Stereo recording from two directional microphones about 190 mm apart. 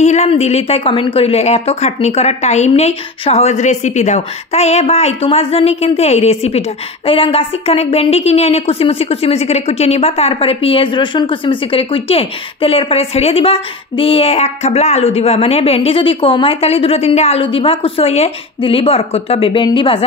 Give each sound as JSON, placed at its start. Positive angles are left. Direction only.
{"t": 0.0, "sound": "a woman's voice", "side_deg": 35}